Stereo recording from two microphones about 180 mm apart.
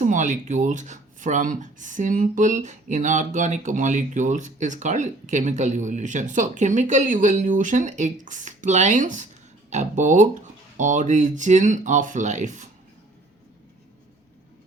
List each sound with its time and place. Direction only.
0.0 s speech: 45° right (ahead or behind)